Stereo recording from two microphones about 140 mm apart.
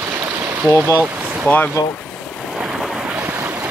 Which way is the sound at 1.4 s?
10° left (ahead or behind).